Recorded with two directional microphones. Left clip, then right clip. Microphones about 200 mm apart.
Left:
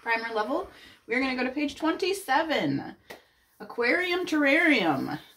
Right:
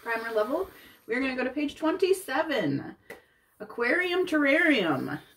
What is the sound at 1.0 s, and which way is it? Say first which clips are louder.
Speech: left 1 dB; 10° right (ahead or behind).